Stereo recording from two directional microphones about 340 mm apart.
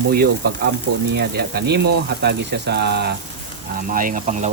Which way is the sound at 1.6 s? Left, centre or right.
Right.